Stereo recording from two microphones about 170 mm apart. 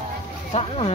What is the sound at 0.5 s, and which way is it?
Speech, 35° left (ahead or behind).